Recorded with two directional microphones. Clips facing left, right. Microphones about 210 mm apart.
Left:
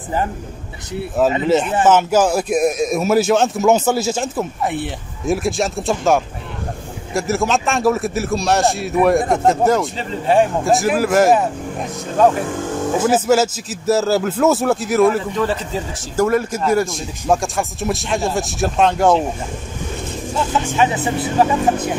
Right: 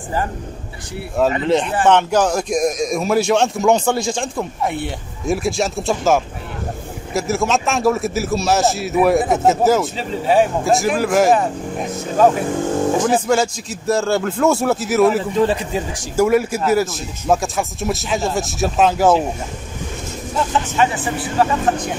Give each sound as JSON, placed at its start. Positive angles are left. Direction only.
{"t": 1.4, "sound": "speech", "side_deg": 5}
{"t": 20.6, "sound": "speech", "side_deg": 15}